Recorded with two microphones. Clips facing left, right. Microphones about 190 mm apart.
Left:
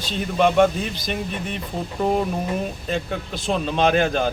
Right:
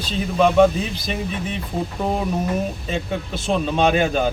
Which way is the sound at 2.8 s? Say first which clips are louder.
Right 1 dB; centre (ahead or behind).